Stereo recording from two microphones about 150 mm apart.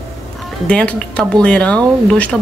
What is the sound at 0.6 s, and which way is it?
Speech, 5° left (ahead or behind).